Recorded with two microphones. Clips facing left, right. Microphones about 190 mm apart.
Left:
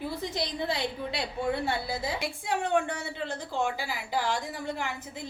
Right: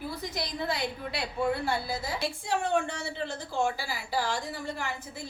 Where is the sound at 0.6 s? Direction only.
25° left (ahead or behind).